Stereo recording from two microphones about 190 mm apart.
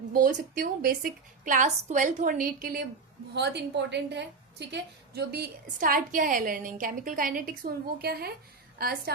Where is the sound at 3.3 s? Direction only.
60° right (ahead or behind).